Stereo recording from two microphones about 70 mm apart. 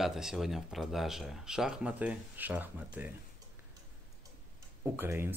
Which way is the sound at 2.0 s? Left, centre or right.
Right.